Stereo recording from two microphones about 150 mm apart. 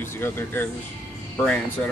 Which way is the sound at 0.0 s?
15° left (ahead or behind).